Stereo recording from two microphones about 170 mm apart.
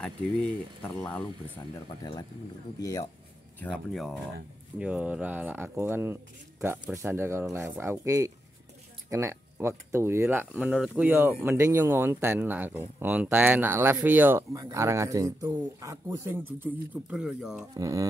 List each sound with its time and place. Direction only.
0.0 s speech: 5° left (ahead or behind)
2.8 s speech: 20° left (ahead or behind)
3.5 s speech: 5° left (ahead or behind)
17.7 s speech: 20° right (ahead or behind)